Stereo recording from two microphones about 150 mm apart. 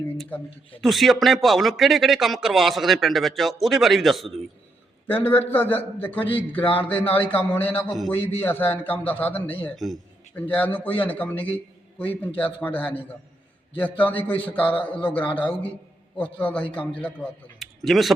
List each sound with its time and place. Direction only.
0.8 s a man's voice: centre (ahead or behind)
5.0 s a man's voice: 10° left (ahead or behind)
9.7 s a man's voice: centre (ahead or behind)
10.3 s a man's voice: 10° left (ahead or behind)
15.2 s a man's voice: 30° left (ahead or behind)
16.1 s a man's voice: 10° left (ahead or behind)